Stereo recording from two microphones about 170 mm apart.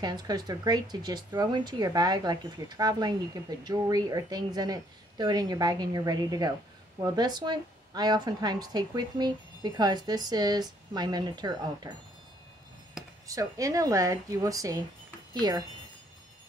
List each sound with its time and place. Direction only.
0.0 s speech: 25° right (ahead or behind)
13.0 s a sound: 5° right (ahead or behind)
13.3 s speech: 20° right (ahead or behind)